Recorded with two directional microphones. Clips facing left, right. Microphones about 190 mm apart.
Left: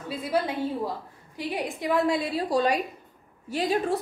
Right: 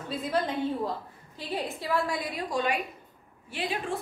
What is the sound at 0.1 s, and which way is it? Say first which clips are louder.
A woman's voice: left 2 dB; 10° left (ahead or behind).